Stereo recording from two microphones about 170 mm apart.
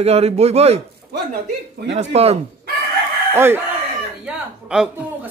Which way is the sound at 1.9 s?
40° right (ahead or behind).